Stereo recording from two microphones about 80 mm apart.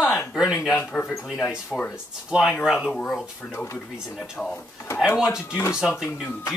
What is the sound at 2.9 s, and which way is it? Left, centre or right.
Speech, centre.